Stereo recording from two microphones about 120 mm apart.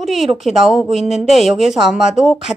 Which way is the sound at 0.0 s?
Centre (ahead or behind).